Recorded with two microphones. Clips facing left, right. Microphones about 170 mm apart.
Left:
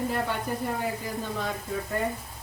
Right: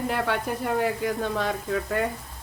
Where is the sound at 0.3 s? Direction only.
75° right (ahead or behind).